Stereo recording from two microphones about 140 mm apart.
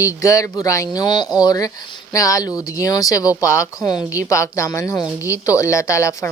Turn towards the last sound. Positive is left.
turn(degrees=20)  # may be behind; listen again after turning